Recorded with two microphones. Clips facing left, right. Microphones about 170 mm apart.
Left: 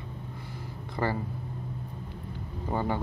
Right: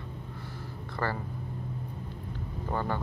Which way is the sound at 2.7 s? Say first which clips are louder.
Left 2 dB; 15° left (ahead or behind).